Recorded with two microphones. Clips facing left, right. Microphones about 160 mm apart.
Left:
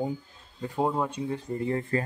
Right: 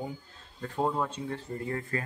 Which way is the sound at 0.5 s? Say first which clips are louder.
Left 2 dB; 15° left (ahead or behind).